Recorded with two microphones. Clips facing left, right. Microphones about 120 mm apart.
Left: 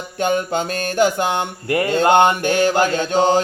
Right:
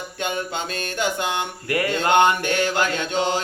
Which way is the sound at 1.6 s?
25° left (ahead or behind).